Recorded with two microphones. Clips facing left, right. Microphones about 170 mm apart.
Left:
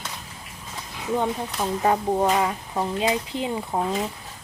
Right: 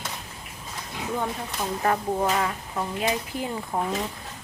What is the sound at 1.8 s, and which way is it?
Speech, 20° left (ahead or behind).